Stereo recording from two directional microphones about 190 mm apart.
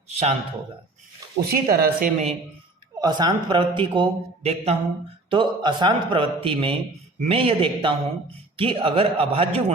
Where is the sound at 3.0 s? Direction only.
20° right (ahead or behind).